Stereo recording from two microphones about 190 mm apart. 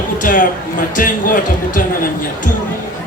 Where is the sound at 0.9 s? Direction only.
45° left (ahead or behind).